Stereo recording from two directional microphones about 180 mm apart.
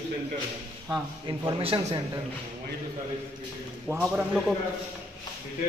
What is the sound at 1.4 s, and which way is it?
Speech, 30° right (ahead or behind).